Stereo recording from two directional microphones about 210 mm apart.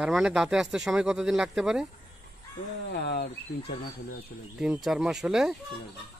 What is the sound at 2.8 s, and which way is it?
Speech, 50° left (ahead or behind).